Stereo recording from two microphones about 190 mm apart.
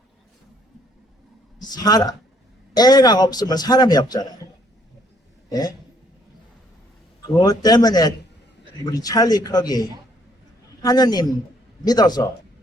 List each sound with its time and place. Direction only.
1.6 s a man's voice: 20° left (ahead or behind)
5.5 s speech: 20° left (ahead or behind)
7.3 s a man's voice: 20° left (ahead or behind)
10.8 s a man's voice: 20° left (ahead or behind)